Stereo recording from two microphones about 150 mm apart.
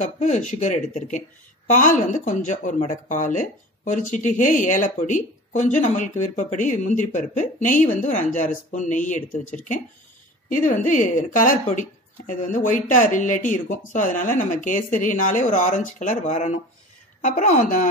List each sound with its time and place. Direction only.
0.0 s speech: 55° left (ahead or behind)
10.7 s speech: 60° left (ahead or behind)